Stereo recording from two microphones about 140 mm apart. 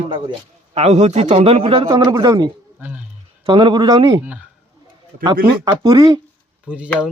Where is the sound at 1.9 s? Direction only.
30° right (ahead or behind).